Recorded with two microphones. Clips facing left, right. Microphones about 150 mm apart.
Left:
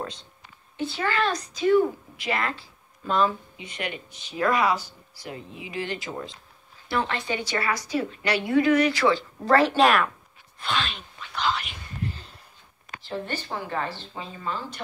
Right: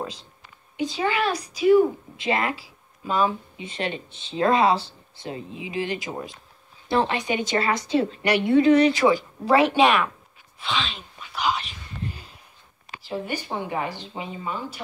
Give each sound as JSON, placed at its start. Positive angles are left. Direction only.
{"t": 0.7, "sound": "speech", "side_deg": -15}
{"t": 2.1, "sound": "speech", "side_deg": -20}
{"t": 2.5, "sound": "speech", "side_deg": -5}
{"t": 3.5, "sound": "speech", "side_deg": -25}
{"t": 11.1, "sound": "whispering", "side_deg": -15}
{"t": 12.0, "sound": "a sound", "side_deg": -15}
{"t": 13.0, "sound": "speech", "side_deg": -10}